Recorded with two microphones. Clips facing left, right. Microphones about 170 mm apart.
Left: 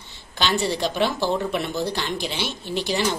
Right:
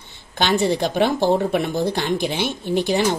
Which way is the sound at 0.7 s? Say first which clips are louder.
Right 4 dB; 50° right (ahead or behind).